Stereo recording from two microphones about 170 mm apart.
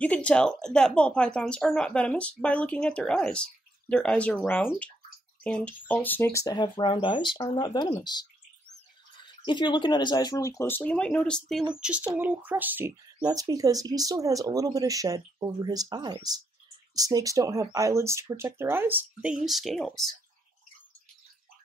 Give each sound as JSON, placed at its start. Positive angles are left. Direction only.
{"t": 0.0, "sound": "speech", "side_deg": 5}
{"t": 10.8, "sound": "speech", "side_deg": 5}
{"t": 13.2, "sound": "speech", "side_deg": -20}